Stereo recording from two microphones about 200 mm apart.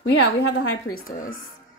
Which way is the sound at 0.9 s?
45° left (ahead or behind).